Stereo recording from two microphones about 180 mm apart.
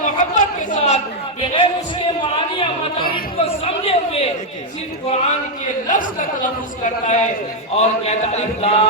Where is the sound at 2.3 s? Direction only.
30° left (ahead or behind).